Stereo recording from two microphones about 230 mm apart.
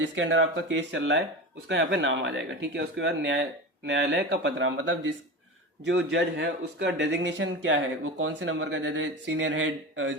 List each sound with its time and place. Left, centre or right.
0.2 s speech: right